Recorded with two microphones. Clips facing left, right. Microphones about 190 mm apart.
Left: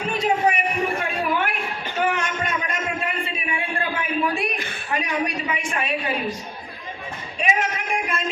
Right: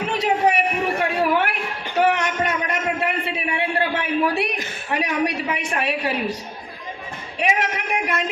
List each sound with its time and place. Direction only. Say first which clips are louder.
0.1 s a sound: right 1 dB; 70° right (ahead or behind)
4.9 s a woman's voice: right 3 dB; 70° right (ahead or behind)
7.3 s speech: right 2 dB; 65° right (ahead or behind)